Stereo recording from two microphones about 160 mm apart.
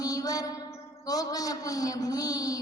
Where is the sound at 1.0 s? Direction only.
25° left (ahead or behind).